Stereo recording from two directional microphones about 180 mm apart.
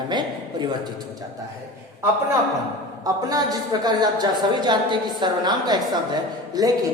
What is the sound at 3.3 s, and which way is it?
A woman's voice, 20° right (ahead or behind).